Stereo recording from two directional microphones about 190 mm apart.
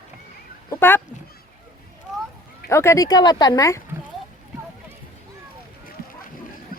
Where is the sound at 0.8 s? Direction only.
10° left (ahead or behind).